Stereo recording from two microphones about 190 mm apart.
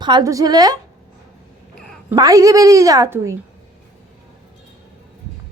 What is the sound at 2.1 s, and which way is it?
A woman's voice, 20° right (ahead or behind).